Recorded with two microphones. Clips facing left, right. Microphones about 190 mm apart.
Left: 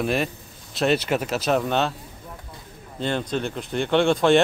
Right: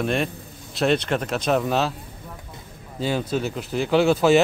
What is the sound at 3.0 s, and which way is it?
Speech, 5° right (ahead or behind).